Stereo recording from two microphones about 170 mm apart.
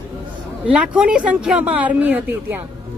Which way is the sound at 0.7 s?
5° right (ahead or behind).